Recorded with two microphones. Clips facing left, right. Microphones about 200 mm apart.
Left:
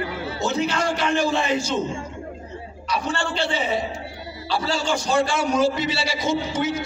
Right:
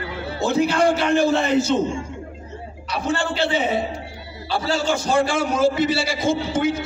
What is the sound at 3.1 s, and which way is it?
Speech, 5° right (ahead or behind).